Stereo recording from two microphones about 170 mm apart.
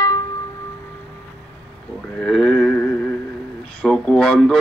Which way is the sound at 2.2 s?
5° left (ahead or behind).